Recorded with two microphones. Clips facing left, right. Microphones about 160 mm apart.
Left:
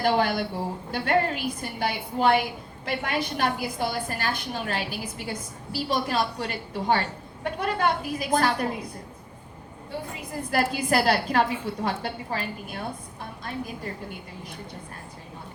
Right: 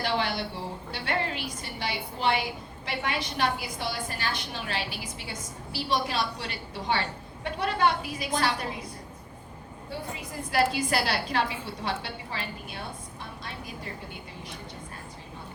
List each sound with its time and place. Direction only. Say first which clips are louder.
0.0 s a woman's voice: left 6 dB; 50° left (ahead or behind)
10.5 s a woman's voice: left 2 dB; 50° left (ahead or behind)